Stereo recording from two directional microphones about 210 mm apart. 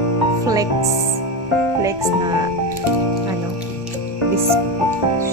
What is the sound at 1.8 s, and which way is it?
Speech, 15° right (ahead or behind).